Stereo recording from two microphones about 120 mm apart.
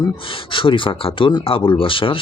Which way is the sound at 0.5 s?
45° left (ahead or behind).